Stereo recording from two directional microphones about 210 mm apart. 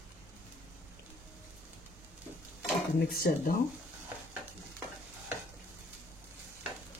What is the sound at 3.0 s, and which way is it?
Speech, 45° left (ahead or behind).